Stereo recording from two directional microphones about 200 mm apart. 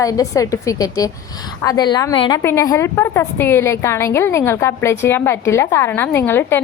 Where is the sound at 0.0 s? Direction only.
15° left (ahead or behind).